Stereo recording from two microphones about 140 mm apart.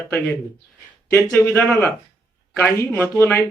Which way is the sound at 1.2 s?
10° left (ahead or behind).